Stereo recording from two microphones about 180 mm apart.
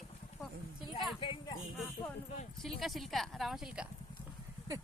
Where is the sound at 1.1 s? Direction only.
30° left (ahead or behind).